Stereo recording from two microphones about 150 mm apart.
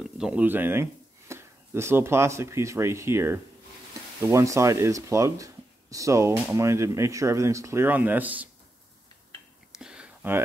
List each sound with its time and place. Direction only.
0.0 s speech: 5° right (ahead or behind)
9.8 s whispering: 5° right (ahead or behind)